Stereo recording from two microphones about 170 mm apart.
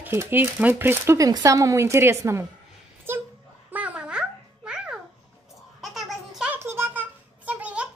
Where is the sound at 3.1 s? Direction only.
15° right (ahead or behind).